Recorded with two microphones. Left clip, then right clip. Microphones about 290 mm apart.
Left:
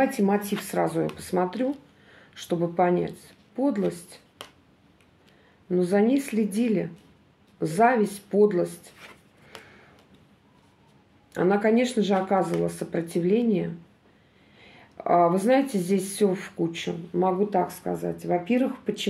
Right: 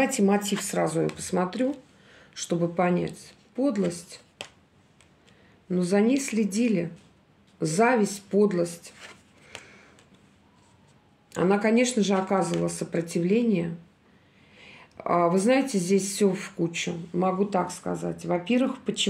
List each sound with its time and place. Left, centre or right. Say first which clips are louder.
0.0 s speech: even; right
5.7 s speech: left 2 dB; right
8.9 s writing: right 1 dB; centre
11.3 s speech: left 1 dB; right